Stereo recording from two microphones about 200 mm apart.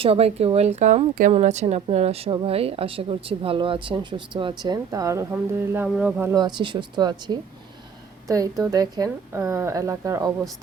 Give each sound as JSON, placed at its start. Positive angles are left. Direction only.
{"t": 0.0, "sound": "speech", "side_deg": -30}
{"t": 6.3, "sound": "a woman's voice", "side_deg": -20}